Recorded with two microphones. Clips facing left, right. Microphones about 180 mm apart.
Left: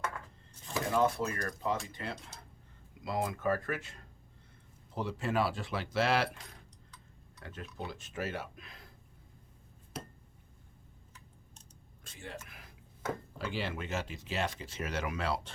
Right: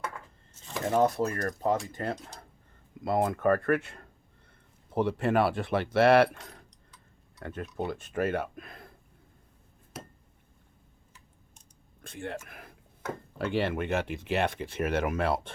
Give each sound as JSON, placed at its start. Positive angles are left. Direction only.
{"t": 0.9, "sound": "speech", "side_deg": -40}
{"t": 12.0, "sound": "speech", "side_deg": -60}